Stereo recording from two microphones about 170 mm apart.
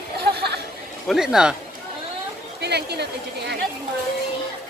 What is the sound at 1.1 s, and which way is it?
Speech, 5° right (ahead or behind).